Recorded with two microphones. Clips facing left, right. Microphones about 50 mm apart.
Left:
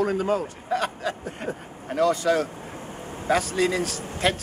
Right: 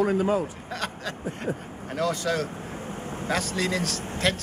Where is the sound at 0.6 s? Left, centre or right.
Centre.